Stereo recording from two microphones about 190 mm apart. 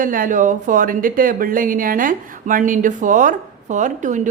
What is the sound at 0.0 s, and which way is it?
A woman's voice, 45° right (ahead or behind).